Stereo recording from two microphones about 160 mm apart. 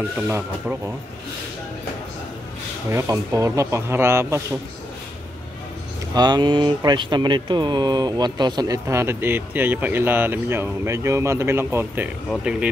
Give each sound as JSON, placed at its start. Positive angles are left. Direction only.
{"t": 2.9, "sound": "speech", "side_deg": -20}
{"t": 6.1, "sound": "speech", "side_deg": -25}